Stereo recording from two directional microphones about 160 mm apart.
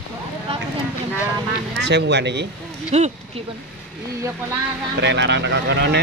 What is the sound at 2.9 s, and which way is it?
Speech, 40° right (ahead or behind).